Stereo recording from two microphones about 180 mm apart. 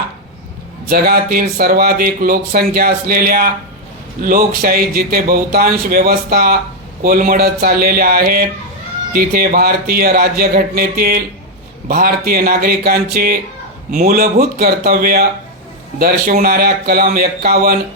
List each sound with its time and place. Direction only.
0.9 s speech: 60° right (ahead or behind)